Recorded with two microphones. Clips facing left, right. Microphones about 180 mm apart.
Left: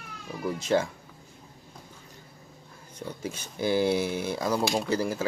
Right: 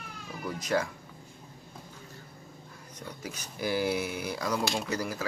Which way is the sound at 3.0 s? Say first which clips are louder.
Left 6 dB; 25° left (ahead or behind).